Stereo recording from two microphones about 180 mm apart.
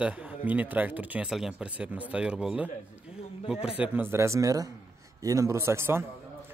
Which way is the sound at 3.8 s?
10° right (ahead or behind).